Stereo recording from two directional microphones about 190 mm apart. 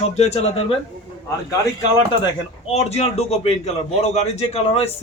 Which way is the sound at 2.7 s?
35° left (ahead or behind).